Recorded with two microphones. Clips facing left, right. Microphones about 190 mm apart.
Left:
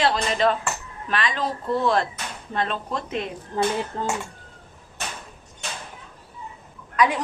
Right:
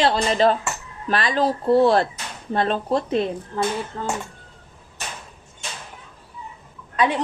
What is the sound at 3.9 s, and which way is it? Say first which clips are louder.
Speech: even; 25° left (ahead or behind).